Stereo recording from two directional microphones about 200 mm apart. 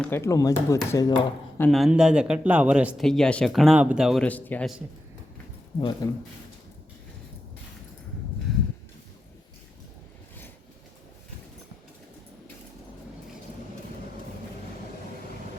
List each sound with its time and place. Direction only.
0.0 s speech: 10° left (ahead or behind)
1.7 s speech: centre (ahead or behind)
6.0 s speech: 15° left (ahead or behind)